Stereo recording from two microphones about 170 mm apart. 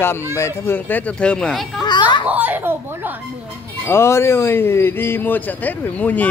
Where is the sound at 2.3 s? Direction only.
10° right (ahead or behind).